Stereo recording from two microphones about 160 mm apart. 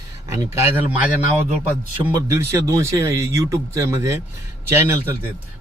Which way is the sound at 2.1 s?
20° right (ahead or behind).